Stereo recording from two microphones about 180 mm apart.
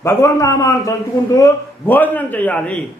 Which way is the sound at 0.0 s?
15° left (ahead or behind).